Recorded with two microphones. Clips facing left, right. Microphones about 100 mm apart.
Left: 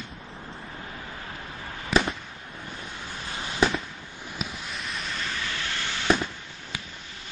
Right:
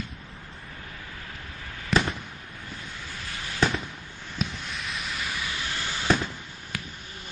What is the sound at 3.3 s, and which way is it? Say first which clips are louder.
Fireworks: left 3 dB; 25° left (ahead or behind).